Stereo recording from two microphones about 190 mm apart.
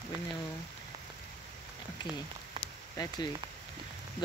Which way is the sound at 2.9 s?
20° left (ahead or behind).